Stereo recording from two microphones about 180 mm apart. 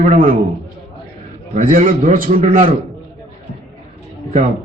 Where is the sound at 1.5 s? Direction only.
50° right (ahead or behind).